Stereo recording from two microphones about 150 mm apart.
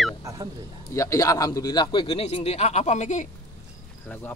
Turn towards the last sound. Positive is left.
turn(degrees=50)  # may be behind; listen again after turning